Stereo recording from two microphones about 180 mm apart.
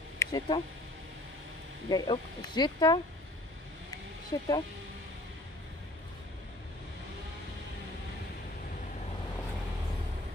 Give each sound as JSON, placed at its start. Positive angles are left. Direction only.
{"t": 0.2, "sound": "speech", "side_deg": 20}
{"t": 1.9, "sound": "speech", "side_deg": 25}
{"t": 4.3, "sound": "speech", "side_deg": 20}